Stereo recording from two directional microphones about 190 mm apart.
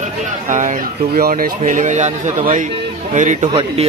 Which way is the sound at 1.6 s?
40° right (ahead or behind).